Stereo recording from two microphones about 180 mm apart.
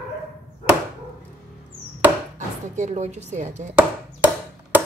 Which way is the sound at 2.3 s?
40° right (ahead or behind).